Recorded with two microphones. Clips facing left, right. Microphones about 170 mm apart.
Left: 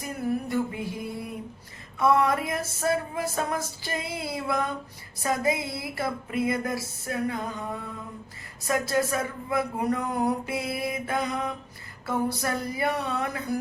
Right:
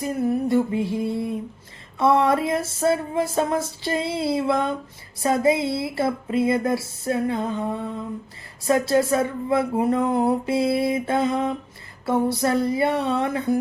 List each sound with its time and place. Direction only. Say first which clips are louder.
0.0 s speech: right 7 dB; 25° right (ahead or behind)